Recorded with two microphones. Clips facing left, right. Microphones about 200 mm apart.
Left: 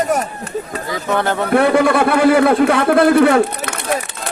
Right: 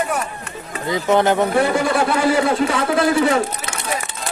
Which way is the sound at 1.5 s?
60° left (ahead or behind).